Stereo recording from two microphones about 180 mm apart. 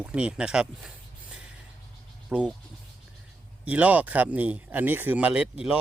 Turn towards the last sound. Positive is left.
turn(degrees=-5)  # may be behind; listen again after turning